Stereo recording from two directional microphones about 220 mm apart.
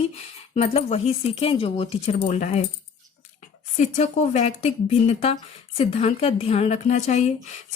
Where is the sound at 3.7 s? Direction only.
30° left (ahead or behind).